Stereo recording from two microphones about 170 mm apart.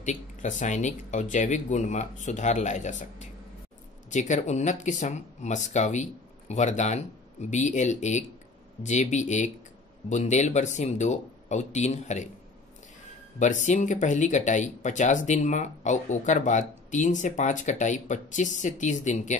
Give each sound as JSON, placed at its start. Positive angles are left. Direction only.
{"t": 0.0, "sound": "speech", "side_deg": 45}
{"t": 13.4, "sound": "speech", "side_deg": 45}